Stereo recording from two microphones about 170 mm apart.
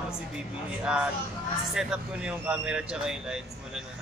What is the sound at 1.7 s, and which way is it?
Speech, 5° right (ahead or behind).